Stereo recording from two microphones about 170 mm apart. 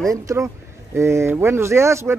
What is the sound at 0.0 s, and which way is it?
Speech, 20° right (ahead or behind).